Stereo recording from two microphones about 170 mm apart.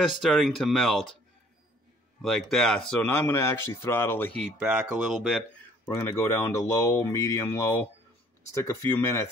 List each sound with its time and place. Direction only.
0.0 s speech: centre (ahead or behind)
2.2 s speech: 5° left (ahead or behind)
4.4 s speech: 5° right (ahead or behind)
5.9 s speech: 15° left (ahead or behind)